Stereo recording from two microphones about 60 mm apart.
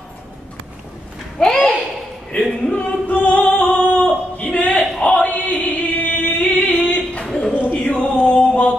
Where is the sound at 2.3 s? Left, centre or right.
Left.